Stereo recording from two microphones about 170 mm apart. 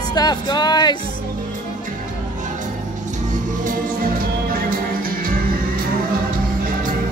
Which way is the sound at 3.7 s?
55° right (ahead or behind).